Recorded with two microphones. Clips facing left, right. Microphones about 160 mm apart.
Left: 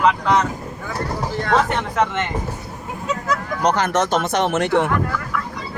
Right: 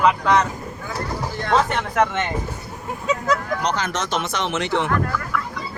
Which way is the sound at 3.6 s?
55° left (ahead or behind).